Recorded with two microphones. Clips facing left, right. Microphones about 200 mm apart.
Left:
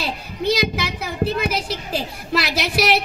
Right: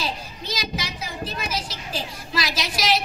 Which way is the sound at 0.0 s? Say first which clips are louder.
Left 7 dB; 60° left (ahead or behind).